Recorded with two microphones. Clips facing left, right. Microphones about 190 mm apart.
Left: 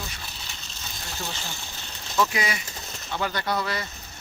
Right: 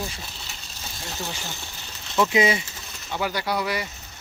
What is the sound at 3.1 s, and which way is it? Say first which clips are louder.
Speech: right 1 dB; 10° right (ahead or behind).